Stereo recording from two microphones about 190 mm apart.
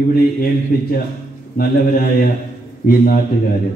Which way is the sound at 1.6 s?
50° left (ahead or behind).